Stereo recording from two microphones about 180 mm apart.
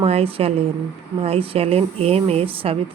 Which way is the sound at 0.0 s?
35° right (ahead or behind).